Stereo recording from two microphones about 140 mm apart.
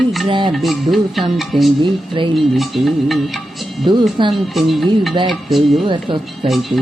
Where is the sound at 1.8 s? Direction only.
35° right (ahead or behind).